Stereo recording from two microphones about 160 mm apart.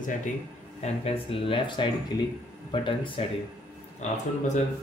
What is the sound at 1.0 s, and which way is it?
A man's voice, 35° left (ahead or behind).